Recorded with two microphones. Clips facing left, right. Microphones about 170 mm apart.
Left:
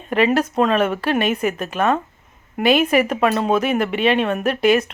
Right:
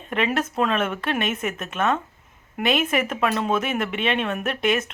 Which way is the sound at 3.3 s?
35° left (ahead or behind).